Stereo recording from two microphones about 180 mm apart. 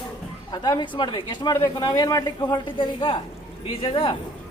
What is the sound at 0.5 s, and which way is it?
Speech, 25° left (ahead or behind).